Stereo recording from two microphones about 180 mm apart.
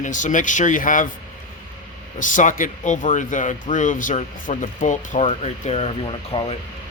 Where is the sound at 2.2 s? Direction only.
45° left (ahead or behind).